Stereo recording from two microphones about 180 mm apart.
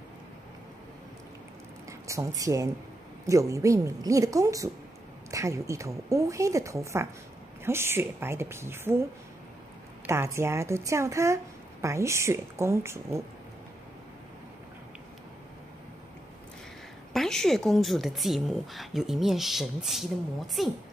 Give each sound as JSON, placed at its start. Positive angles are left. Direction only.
{"t": 1.9, "sound": "a woman's voice", "side_deg": -15}
{"t": 10.0, "sound": "a woman's voice", "side_deg": -15}
{"t": 17.1, "sound": "speech", "side_deg": 0}